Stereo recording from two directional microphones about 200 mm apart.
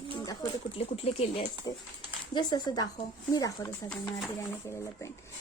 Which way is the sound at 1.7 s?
15° left (ahead or behind).